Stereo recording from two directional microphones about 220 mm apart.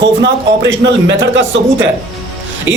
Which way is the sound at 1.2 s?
55° right (ahead or behind).